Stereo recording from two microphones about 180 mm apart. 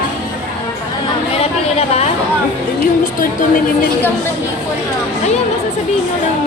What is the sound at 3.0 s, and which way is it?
Speech, 50° left (ahead or behind).